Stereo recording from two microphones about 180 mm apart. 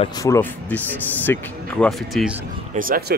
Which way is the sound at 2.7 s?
50° right (ahead or behind).